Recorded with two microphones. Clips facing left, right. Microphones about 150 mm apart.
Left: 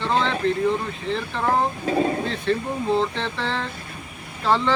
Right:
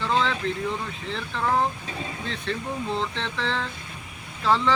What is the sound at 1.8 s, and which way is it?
Speech, 55° left (ahead or behind).